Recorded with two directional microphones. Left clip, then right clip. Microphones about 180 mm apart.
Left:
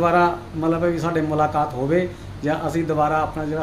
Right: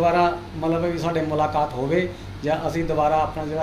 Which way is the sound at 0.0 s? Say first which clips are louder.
Left 1 dB; 45° left (ahead or behind).